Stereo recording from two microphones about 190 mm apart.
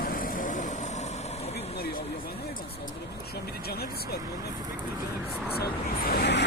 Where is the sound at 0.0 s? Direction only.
45° left (ahead or behind).